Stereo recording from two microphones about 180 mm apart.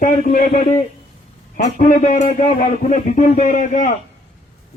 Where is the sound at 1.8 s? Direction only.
45° left (ahead or behind).